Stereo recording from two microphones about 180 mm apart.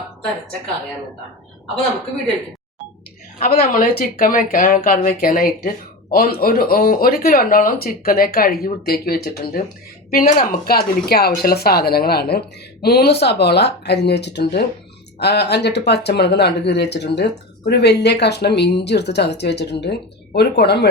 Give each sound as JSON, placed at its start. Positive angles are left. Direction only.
{"t": 3.4, "sound": "speech", "side_deg": 55}